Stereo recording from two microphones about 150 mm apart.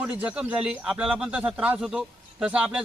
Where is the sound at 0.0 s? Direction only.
10° right (ahead or behind).